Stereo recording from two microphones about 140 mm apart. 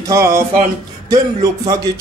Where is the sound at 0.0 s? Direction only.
20° right (ahead or behind).